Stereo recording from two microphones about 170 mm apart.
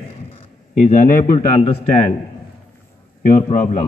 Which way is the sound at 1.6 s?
35° left (ahead or behind).